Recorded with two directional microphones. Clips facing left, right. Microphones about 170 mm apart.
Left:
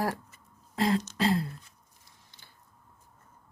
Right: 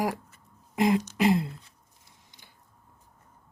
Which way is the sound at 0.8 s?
15° right (ahead or behind).